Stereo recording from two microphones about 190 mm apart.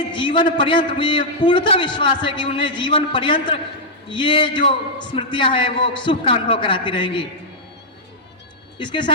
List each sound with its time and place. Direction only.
0.1 s a man's voice: 25° left (ahead or behind)
8.8 s a man's voice: 25° left (ahead or behind)